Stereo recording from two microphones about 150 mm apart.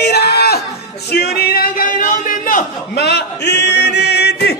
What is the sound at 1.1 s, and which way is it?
Female singing, 90° left.